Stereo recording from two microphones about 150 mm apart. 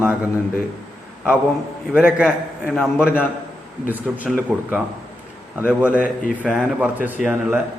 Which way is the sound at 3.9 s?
10° right (ahead or behind).